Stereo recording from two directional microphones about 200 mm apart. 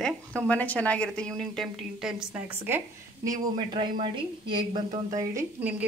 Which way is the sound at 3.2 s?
20° right (ahead or behind).